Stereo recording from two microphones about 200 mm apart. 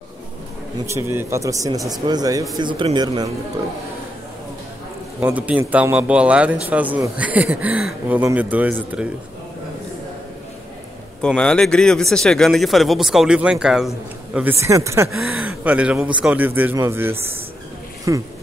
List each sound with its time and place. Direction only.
0.8 s a man's voice: 15° right (ahead or behind)
5.2 s a man's voice: 5° right (ahead or behind)
11.1 s a man's voice: 5° left (ahead or behind); by 18.2 s 15° right (ahead or behind)